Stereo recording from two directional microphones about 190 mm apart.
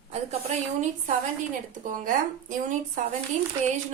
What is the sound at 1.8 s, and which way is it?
Speech, 45° right (ahead or behind).